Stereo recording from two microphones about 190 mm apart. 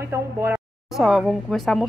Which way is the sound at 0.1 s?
15° right (ahead or behind).